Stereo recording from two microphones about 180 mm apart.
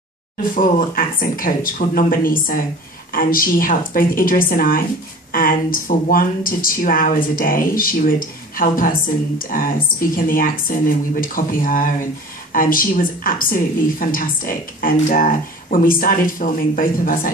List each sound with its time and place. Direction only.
0.4 s a woman's voice: 50° left (ahead or behind)